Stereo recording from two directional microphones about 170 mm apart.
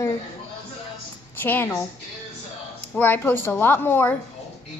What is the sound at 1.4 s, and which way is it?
Speech, 10° left (ahead or behind).